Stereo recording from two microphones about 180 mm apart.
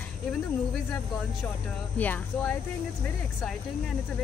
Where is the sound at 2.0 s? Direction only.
10° left (ahead or behind).